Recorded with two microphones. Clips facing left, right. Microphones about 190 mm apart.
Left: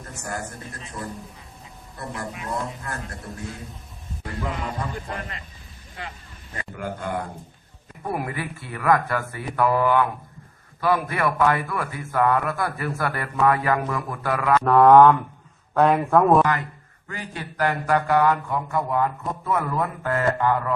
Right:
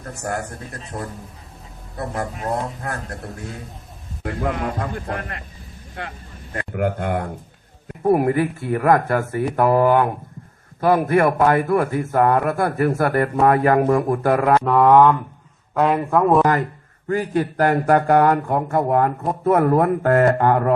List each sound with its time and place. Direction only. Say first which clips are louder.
0.1 s speech: right 6 dB; 65° right (ahead or behind)
2.0 s a man's voice: right 6 dB; 65° right (ahead or behind)
8.0 s a man's voice: right 12 dB; 45° right (ahead or behind)
14.6 s speech: left 3 dB; 5° right (ahead or behind)
16.4 s a man's voice: right 4 dB; 45° right (ahead or behind)